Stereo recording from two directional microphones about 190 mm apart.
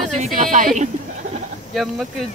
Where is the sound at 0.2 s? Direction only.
40° right (ahead or behind).